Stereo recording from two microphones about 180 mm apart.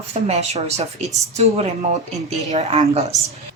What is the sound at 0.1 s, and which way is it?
Speech, 35° right (ahead or behind).